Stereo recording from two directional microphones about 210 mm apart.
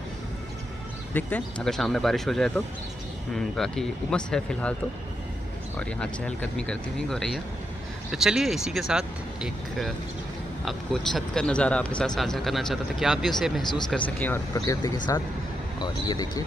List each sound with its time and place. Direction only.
1.1 s speech: 5° left (ahead or behind)
5.8 s speech: 5° left (ahead or behind)